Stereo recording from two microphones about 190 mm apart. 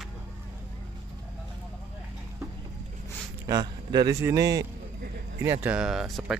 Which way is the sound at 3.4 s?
20° right (ahead or behind).